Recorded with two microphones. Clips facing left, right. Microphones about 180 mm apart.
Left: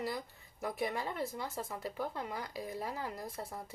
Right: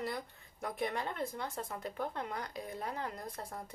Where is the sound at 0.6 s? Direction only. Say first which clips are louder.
Even; 5° left (ahead or behind).